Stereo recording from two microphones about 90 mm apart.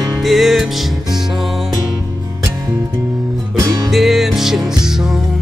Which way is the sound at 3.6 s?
45° right (ahead or behind).